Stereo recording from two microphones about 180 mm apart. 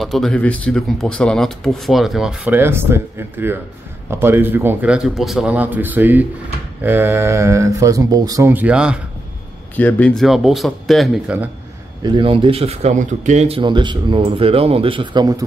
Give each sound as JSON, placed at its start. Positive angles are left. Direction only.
{"t": 0.0, "sound": "speech", "side_deg": 0}
{"t": 9.8, "sound": "speech", "side_deg": 10}
{"t": 12.0, "sound": "speech", "side_deg": -25}